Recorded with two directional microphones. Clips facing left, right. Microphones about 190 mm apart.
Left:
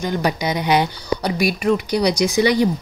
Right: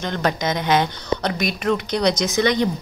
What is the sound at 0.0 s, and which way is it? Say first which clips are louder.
Speech: left 2 dB; 10° left (ahead or behind).